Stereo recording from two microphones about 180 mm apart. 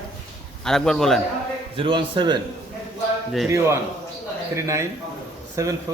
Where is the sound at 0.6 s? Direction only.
Centre (ahead or behind).